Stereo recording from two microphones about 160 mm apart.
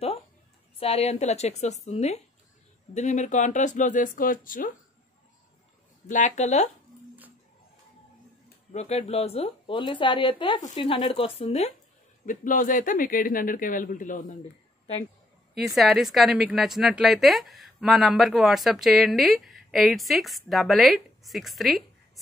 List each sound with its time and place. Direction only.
0.7 s speech: 40° left (ahead or behind); by 4.7 s 60° left (ahead or behind)
6.0 s speech: 50° left (ahead or behind)
8.7 s speech: 45° left (ahead or behind)
12.3 s speech: 55° left (ahead or behind)
15.5 s a woman's voice: centre (ahead or behind)